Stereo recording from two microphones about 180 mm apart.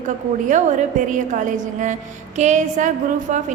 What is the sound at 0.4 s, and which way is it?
A woman's voice, 45° right (ahead or behind).